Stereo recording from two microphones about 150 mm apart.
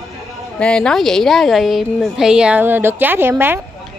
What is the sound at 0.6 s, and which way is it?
A woman's voice, 5° left (ahead or behind).